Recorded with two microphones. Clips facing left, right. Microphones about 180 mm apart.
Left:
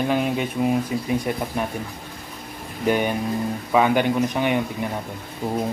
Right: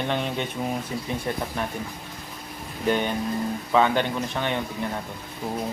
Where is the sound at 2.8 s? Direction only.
10° left (ahead or behind).